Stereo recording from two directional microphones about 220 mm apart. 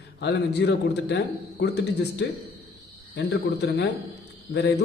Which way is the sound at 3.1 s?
50° left (ahead or behind).